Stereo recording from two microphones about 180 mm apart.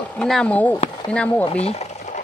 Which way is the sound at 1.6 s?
35° left (ahead or behind).